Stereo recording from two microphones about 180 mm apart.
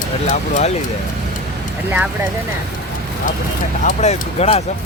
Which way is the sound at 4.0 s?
35° left (ahead or behind).